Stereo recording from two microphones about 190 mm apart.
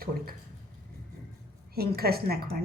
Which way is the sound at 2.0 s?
55° right (ahead or behind).